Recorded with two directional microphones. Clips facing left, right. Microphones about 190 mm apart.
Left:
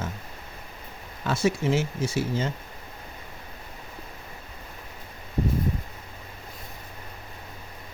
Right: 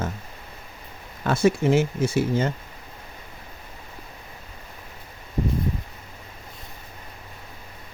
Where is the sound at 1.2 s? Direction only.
55° right (ahead or behind).